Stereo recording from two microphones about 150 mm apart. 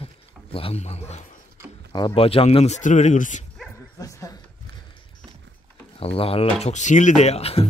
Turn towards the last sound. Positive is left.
turn(degrees=45)  # may be behind; listen again after turning